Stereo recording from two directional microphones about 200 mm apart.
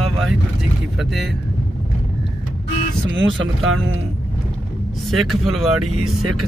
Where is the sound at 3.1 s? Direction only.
70° right (ahead or behind).